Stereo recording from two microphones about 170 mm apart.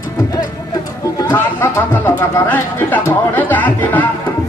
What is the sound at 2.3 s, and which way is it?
Speech, 10° left (ahead or behind).